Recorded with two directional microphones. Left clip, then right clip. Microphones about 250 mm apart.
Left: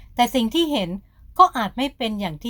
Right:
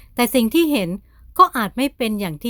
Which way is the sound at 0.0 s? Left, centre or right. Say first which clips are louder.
Right 1 dB; right.